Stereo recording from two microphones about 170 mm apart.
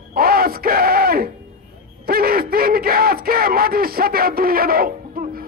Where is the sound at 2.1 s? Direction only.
60° right (ahead or behind).